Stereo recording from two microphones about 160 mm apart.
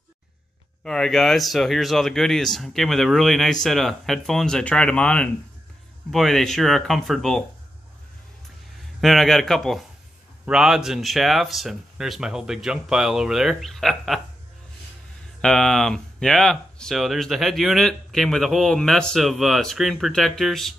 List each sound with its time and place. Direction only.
0.8 s speech: 5° left (ahead or behind)
9.0 s speech: centre (ahead or behind)
15.4 s speech: 5° left (ahead or behind)